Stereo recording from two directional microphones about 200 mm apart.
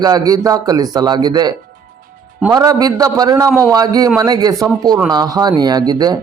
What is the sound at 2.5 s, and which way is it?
A man's voice, 20° right (ahead or behind).